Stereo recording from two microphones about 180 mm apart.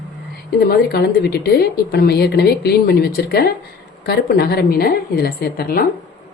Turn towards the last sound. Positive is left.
turn(degrees=55)  # may be behind; listen again after turning